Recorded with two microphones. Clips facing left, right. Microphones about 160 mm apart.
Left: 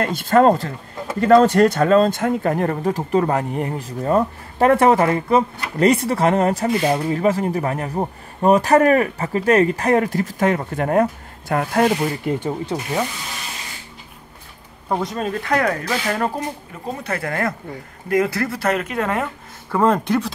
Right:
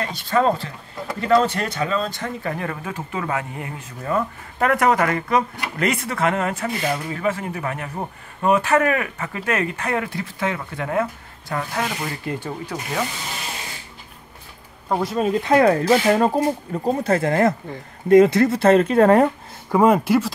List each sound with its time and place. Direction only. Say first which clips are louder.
0.0 s speech: left 5 dB; 50° left (ahead or behind)
12.4 s speech: left 5 dB; 25° left (ahead or behind)
14.9 s speech: right 1 dB; centre (ahead or behind)
15.2 s speech: right 6 dB; 20° right (ahead or behind); by 19.2 s 35° right (ahead or behind)
19.7 s speech: right 2 dB; 10° right (ahead or behind)